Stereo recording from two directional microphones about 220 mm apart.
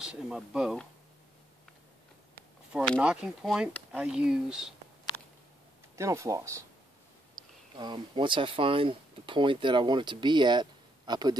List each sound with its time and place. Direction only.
0.0 s speech: 5° right (ahead or behind)
2.7 s speech: 5° right (ahead or behind)
5.9 s speech: 15° right (ahead or behind)
7.7 s speech: 20° right (ahead or behind)